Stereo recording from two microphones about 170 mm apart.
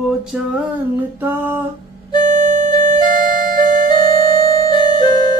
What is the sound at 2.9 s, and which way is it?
Music, 25° left (ahead or behind).